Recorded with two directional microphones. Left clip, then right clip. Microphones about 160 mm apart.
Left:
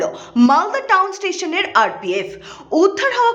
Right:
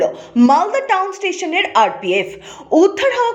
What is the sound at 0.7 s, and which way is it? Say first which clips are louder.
A woman's voice: left 1 dB; 40° left (ahead or behind).